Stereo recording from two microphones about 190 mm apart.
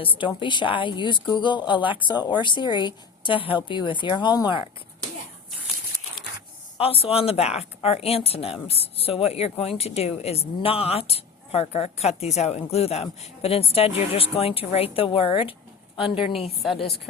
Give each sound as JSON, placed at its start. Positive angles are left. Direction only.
{"t": 0.0, "sound": "a woman's voice", "side_deg": 25}
{"t": 6.7, "sound": "speech", "side_deg": 30}
{"t": 16.0, "sound": "a woman's voice", "side_deg": 0}